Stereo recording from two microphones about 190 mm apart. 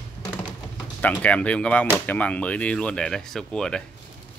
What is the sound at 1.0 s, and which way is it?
Speech, 5° left (ahead or behind).